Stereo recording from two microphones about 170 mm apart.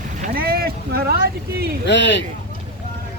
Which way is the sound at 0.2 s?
60° right (ahead or behind).